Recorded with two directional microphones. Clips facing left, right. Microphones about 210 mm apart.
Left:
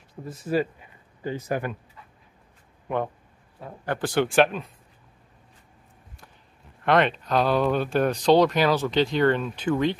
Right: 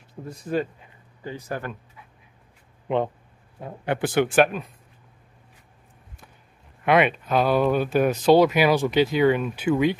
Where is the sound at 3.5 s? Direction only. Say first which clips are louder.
Right 3 dB; 20° right (ahead or behind).